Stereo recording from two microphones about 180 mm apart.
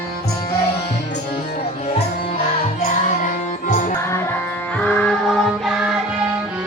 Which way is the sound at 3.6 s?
45° left (ahead or behind).